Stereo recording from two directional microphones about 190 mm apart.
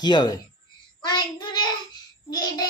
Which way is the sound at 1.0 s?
25° left (ahead or behind).